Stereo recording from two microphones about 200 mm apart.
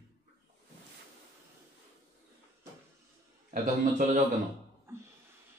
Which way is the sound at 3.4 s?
35° right (ahead or behind).